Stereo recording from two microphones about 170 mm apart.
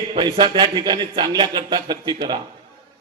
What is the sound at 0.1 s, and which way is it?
Speech, 30° right (ahead or behind).